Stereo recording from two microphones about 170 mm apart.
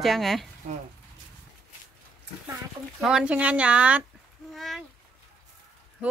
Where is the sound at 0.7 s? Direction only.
40° right (ahead or behind).